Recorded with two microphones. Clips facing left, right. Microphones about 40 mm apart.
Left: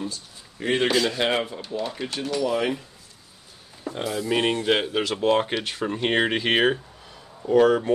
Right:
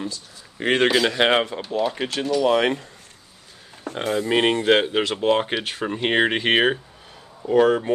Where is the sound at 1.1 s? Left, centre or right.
Right.